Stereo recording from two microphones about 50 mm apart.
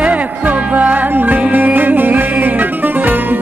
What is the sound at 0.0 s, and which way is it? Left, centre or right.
Music, right.